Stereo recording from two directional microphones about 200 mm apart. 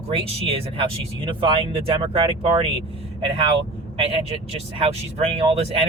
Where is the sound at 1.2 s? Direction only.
25° right (ahead or behind).